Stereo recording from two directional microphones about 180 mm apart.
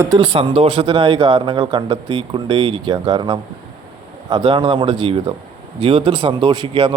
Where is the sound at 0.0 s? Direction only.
25° right (ahead or behind).